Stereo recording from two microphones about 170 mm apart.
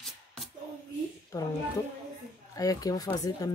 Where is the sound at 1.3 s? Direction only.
20° left (ahead or behind).